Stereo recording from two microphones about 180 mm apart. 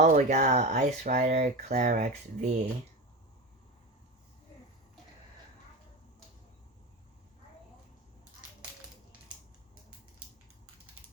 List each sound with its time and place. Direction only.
0.0 s speech: 40° right (ahead or behind)